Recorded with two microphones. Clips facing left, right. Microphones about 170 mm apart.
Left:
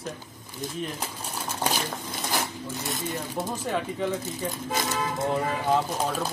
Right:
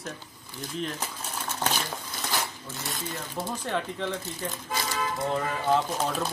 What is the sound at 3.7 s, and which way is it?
Speech, 5° left (ahead or behind).